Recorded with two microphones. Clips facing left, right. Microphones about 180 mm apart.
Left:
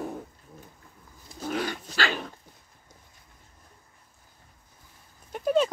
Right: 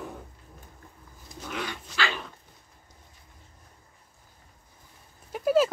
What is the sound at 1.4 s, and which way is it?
Dog, 40° left (ahead or behind).